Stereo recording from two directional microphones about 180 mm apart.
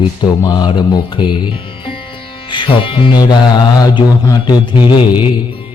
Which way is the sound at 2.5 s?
25° left (ahead or behind).